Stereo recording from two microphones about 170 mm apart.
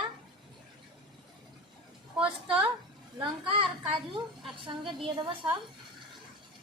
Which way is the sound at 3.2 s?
30° right (ahead or behind).